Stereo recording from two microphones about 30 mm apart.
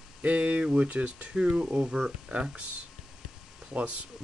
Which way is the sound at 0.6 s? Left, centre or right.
Right.